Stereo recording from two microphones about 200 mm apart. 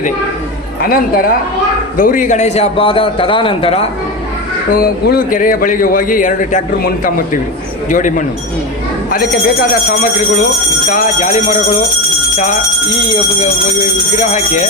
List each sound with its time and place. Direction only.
0.8 s a man's voice: 50° left (ahead or behind); by 3.8 s 30° left (ahead or behind)
4.7 s a man's voice: 50° left (ahead or behind)
10.8 s speech: 40° left (ahead or behind)
14.2 s speech: 40° left (ahead or behind)